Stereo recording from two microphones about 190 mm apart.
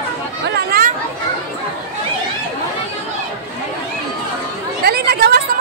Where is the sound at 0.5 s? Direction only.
50° right (ahead or behind).